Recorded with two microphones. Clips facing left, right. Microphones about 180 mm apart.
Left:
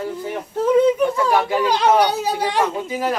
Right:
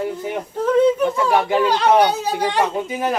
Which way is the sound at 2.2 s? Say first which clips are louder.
Even; 10° left (ahead or behind).